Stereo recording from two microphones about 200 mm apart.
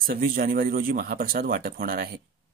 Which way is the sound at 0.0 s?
45° right (ahead or behind).